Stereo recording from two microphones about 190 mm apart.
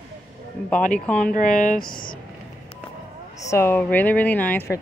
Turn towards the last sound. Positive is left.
turn(degrees=10)  # may be behind; listen again after turning